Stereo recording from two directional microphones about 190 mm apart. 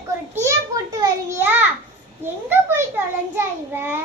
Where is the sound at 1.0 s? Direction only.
15° right (ahead or behind).